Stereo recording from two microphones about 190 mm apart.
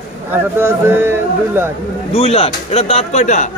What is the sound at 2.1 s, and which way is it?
Speech, 30° left (ahead or behind).